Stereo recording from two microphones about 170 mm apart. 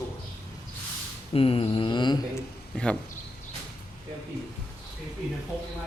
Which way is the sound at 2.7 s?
5° left (ahead or behind).